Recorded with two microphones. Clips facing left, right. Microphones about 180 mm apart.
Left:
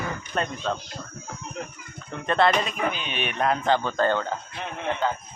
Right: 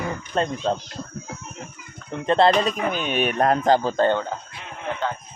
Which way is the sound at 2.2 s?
30° right (ahead or behind).